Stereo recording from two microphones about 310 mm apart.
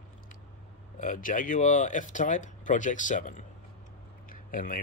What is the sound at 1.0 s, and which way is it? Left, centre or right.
Speech, left.